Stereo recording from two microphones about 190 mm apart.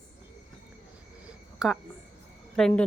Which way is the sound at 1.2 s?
Centre (ahead or behind).